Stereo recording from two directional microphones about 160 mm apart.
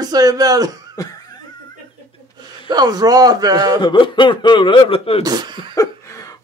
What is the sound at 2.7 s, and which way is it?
Speech, 25° right (ahead or behind).